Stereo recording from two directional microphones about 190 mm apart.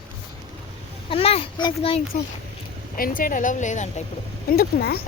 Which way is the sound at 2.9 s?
45° left (ahead or behind).